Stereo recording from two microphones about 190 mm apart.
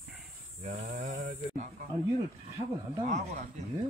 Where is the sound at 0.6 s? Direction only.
40° right (ahead or behind).